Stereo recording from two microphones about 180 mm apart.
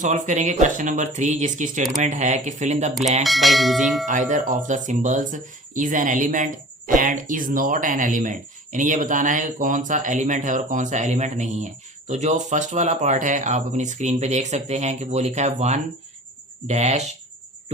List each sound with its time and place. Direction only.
0.0 s speech: 40° right (ahead or behind)
3.2 s bell: centre (ahead or behind)
4.3 s speech: 45° right (ahead or behind)